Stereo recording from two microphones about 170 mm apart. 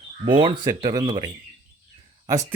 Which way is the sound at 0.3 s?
30° right (ahead or behind).